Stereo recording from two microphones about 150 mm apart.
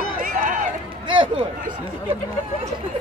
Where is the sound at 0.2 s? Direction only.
65° right (ahead or behind).